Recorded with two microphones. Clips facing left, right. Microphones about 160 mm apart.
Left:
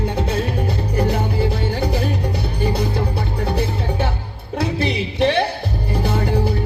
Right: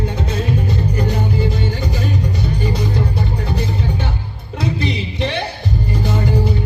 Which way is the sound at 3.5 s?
60° left (ahead or behind).